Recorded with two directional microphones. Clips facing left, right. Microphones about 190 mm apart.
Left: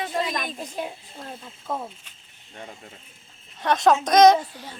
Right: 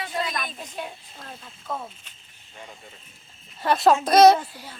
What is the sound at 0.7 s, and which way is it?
A child's voice, 20° left (ahead or behind).